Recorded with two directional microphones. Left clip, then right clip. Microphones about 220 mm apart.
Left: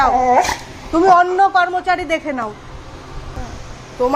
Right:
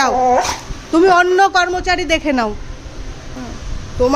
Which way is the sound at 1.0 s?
30° right (ahead or behind).